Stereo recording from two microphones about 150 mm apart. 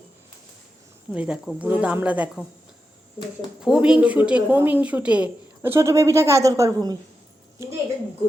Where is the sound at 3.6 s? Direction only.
5° right (ahead or behind); by 6.9 s 25° right (ahead or behind).